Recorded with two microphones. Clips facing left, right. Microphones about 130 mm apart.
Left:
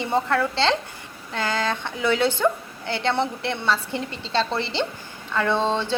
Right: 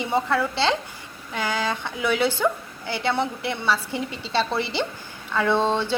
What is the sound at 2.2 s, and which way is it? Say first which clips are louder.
Speech: left 1 dB; 25° left (ahead or behind).